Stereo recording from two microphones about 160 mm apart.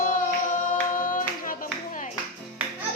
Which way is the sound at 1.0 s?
55° left (ahead or behind).